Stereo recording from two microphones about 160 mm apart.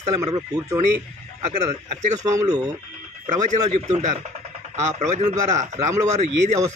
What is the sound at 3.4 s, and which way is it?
A man's voice, 45° right (ahead or behind).